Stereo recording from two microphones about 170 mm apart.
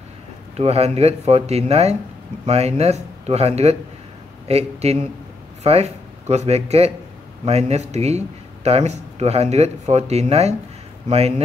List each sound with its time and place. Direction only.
0.6 s speech: 40° right (ahead or behind)